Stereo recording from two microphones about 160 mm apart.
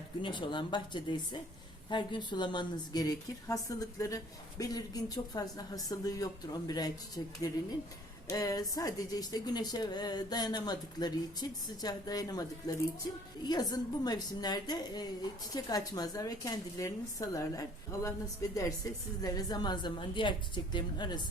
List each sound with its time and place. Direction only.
0.2 s a woman's voice: 30° left (ahead or behind)
19.2 s a woman's voice: 25° left (ahead or behind)